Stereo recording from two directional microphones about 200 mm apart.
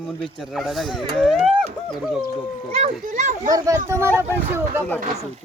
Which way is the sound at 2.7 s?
35° right (ahead or behind).